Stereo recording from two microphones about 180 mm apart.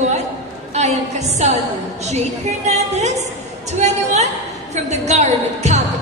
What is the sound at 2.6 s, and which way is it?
A woman's voice, 40° right (ahead or behind).